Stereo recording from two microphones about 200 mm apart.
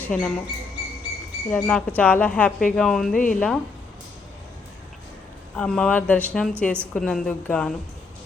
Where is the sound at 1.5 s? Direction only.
5° left (ahead or behind).